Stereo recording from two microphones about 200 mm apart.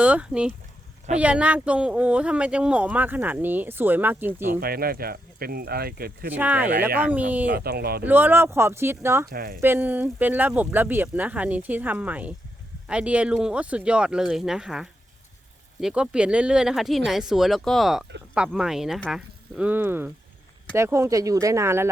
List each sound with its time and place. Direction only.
0.0 s speech: 5° right (ahead or behind)
4.6 s speech: 50° right (ahead or behind)
6.3 s speech: 10° right (ahead or behind)
7.5 s speech: 50° right (ahead or behind)
8.0 s speech: 10° right (ahead or behind)
9.3 s speech: 45° right (ahead or behind)
9.6 s speech: 10° right (ahead or behind)